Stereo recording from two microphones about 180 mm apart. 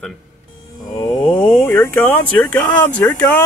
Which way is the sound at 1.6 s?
10° left (ahead or behind).